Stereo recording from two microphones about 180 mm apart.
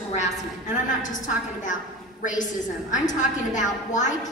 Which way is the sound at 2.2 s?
45° left (ahead or behind).